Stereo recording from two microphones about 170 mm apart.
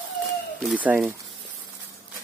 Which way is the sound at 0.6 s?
10° right (ahead or behind).